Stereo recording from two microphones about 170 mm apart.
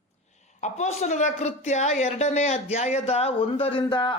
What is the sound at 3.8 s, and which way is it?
Speech, 30° left (ahead or behind).